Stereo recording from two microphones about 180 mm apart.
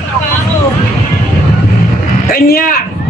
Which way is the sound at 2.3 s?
55° left (ahead or behind).